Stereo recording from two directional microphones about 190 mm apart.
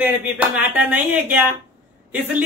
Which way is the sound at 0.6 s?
10° right (ahead or behind).